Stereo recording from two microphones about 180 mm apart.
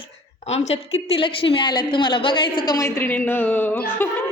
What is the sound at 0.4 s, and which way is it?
A woman's voice, 35° left (ahead or behind).